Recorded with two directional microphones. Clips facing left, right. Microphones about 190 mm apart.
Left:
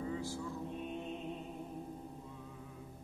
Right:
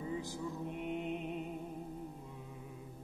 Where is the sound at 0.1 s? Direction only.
20° right (ahead or behind).